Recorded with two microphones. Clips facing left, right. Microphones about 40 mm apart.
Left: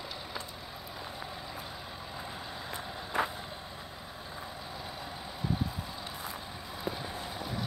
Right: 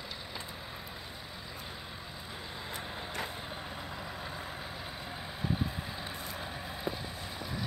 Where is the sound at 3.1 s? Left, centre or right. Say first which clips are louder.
Left 9 dB; centre.